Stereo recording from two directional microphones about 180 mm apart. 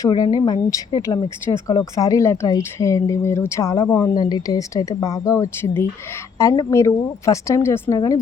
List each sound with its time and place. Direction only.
0.0 s speech: 20° left (ahead or behind)